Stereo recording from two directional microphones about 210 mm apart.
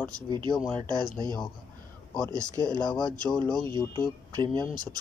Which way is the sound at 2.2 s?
15° right (ahead or behind).